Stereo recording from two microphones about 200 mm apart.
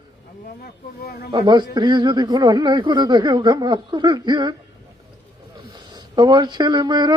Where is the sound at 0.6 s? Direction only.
55° left (ahead or behind).